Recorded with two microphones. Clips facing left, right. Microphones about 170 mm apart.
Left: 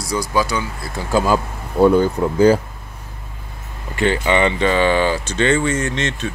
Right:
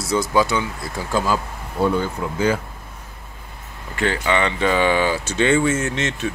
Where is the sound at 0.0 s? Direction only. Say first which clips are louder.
Right 1 dB; 25° right (ahead or behind).